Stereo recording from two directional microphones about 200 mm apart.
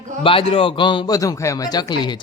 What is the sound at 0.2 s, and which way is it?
A man's voice, 25° left (ahead or behind).